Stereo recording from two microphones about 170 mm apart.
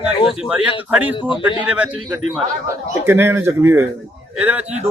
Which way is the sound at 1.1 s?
30° left (ahead or behind).